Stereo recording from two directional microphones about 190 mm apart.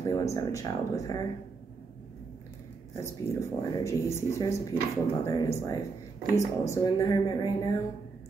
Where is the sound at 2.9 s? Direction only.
15° left (ahead or behind).